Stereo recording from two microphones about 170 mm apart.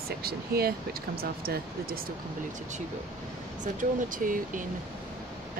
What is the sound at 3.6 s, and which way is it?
Speech, 50° right (ahead or behind).